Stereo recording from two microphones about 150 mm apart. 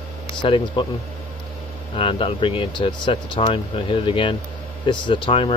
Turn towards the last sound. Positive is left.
turn(degrees=35)  # may be behind; listen again after turning